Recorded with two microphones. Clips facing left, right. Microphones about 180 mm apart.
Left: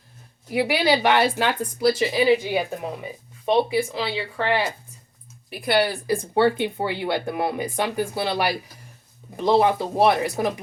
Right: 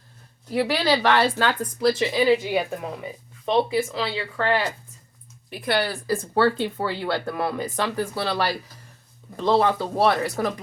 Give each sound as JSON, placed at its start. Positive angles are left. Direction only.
{"t": 0.5, "sound": "speech", "side_deg": 15}